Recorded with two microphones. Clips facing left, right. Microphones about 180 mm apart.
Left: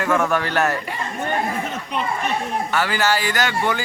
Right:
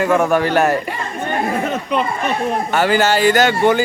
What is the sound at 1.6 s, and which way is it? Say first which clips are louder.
Chatter: right 7 dB; 70° right (ahead or behind).